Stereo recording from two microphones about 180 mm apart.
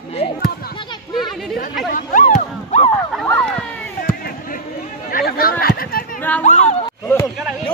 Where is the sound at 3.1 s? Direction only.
5° left (ahead or behind).